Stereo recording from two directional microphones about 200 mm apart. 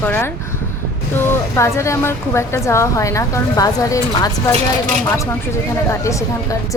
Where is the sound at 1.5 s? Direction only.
15° left (ahead or behind).